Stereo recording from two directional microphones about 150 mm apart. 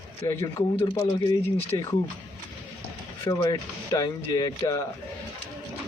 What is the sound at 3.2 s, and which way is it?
Speech, 20° left (ahead or behind).